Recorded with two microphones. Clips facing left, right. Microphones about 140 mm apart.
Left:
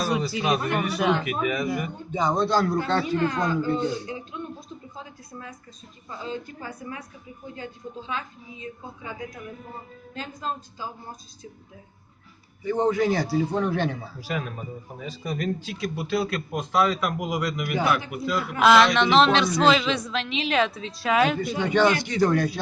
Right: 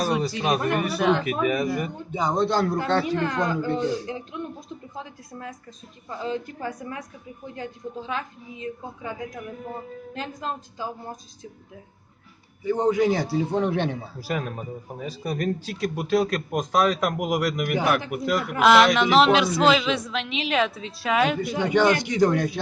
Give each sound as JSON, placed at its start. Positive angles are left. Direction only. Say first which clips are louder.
{"t": 0.4, "sound": "a man's voice", "louder": "right 2 dB", "side_deg": -45}
{"t": 2.1, "sound": "a man's voice", "louder": "even", "side_deg": -15}
{"t": 2.8, "sound": "a woman's voice", "louder": "right 1 dB", "side_deg": -50}
{"t": 6.1, "sound": "a woman's voice", "louder": "right 4 dB", "side_deg": -50}
{"t": 12.6, "sound": "a man's voice", "louder": "right 1 dB", "side_deg": -10}
{"t": 14.2, "sound": "a man's voice", "louder": "right 4 dB", "side_deg": -40}
{"t": 16.5, "sound": "a man's voice", "louder": "left 1 dB", "side_deg": -60}
{"t": 18.6, "sound": "a woman's voice", "louder": "even", "side_deg": 0}
{"t": 21.6, "sound": "speech", "louder": "right 1 dB", "side_deg": -15}